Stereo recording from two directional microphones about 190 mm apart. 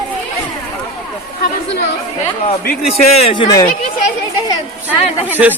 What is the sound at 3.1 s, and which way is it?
Speech, 30° left (ahead or behind).